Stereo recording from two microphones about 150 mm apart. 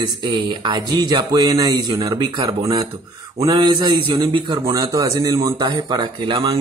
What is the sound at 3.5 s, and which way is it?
Speech, 35° right (ahead or behind).